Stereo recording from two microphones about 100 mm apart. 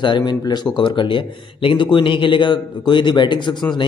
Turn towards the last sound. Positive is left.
turn(degrees=50)  # may be behind; listen again after turning